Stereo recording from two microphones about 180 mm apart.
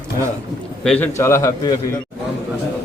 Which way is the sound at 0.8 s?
10° left (ahead or behind).